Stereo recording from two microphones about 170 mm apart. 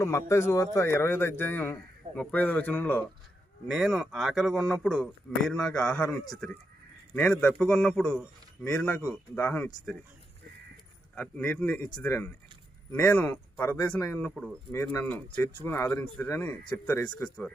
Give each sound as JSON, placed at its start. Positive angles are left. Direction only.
{"t": 0.0, "sound": "speech", "side_deg": 15}
{"t": 3.7, "sound": "a man's voice", "side_deg": 0}
{"t": 7.2, "sound": "a man's voice", "side_deg": 5}
{"t": 11.1, "sound": "speech", "side_deg": 10}